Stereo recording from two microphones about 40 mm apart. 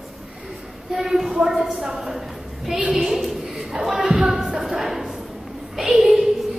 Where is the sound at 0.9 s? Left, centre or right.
Centre.